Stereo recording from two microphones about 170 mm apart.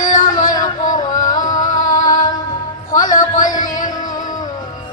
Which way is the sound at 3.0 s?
50° left (ahead or behind).